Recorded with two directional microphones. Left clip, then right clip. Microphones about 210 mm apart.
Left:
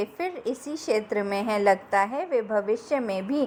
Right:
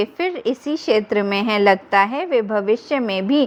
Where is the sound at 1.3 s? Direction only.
55° right (ahead or behind).